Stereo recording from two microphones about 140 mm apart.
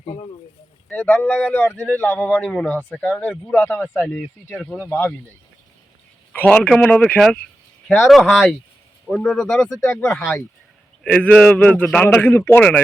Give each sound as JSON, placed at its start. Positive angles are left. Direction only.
{"t": 0.0, "sound": "speech", "side_deg": 45}
{"t": 0.9, "sound": "speech", "side_deg": 15}
{"t": 4.9, "sound": "speech", "side_deg": 15}
{"t": 6.3, "sound": "speech", "side_deg": 10}
{"t": 9.9, "sound": "speech", "side_deg": 20}
{"t": 10.2, "sound": "speech", "side_deg": 0}